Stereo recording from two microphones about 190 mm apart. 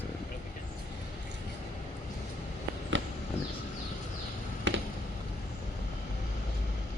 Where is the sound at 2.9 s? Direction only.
75° right (ahead or behind).